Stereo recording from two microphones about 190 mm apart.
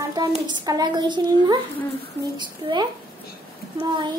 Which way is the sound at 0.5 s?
20° right (ahead or behind).